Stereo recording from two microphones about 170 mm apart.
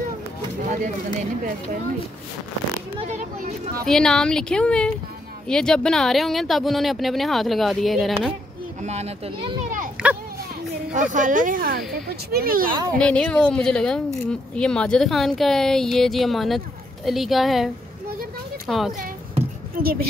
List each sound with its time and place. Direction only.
3.1 s speech: 40° right (ahead or behind)
3.8 s speech: 5° left (ahead or behind)
8.8 s a child's voice: 40° right (ahead or behind)
10.0 s a sound: 5° right (ahead or behind)
10.9 s speech: 50° right (ahead or behind)
13.0 s speech: 5° left (ahead or behind)
18.7 s speech: centre (ahead or behind)
19.8 s speech: 60° right (ahead or behind)